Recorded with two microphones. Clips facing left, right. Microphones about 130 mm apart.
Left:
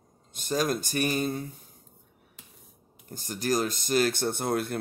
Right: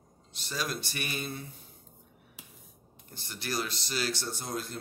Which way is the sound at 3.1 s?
45° left (ahead or behind).